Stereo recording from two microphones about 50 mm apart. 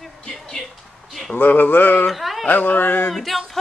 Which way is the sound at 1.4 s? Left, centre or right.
Left.